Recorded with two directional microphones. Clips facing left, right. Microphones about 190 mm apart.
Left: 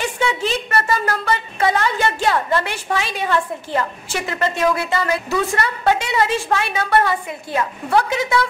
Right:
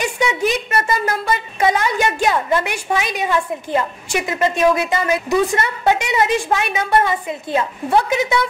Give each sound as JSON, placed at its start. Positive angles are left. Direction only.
{"t": 0.0, "sound": "a woman's voice", "side_deg": -15}